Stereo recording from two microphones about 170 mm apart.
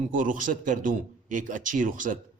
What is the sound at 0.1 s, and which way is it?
A man's voice, 50° right (ahead or behind).